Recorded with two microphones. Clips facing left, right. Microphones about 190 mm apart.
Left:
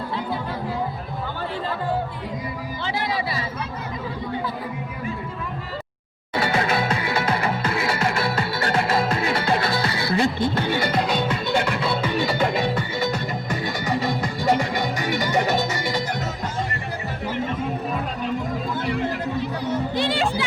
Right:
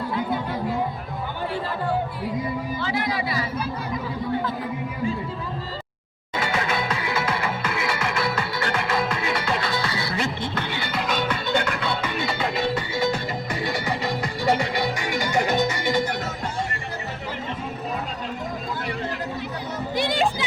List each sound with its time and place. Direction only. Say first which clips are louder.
2.8 s a sound: left 2 dB; 30° left (ahead or behind)
6.3 s music: left 3 dB; 35° left (ahead or behind)
14.4 s music: left 1 dB; 45° left (ahead or behind)
20.0 s music: right 3 dB; 15° right (ahead or behind)